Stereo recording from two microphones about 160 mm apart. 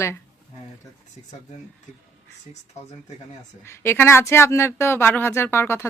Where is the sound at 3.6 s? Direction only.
15° left (ahead or behind).